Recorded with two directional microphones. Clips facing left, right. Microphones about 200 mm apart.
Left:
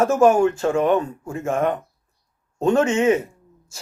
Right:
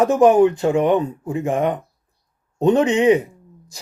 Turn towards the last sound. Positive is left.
turn(degrees=-15)  # may be behind; listen again after turning